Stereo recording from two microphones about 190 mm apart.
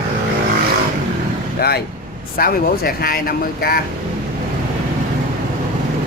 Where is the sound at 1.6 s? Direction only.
60° left (ahead or behind).